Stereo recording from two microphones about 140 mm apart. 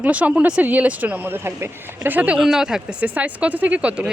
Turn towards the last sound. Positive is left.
turn(degrees=-10)  # may be behind; listen again after turning